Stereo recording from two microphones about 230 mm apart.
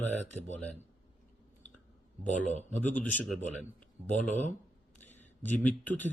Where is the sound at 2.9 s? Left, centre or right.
Centre.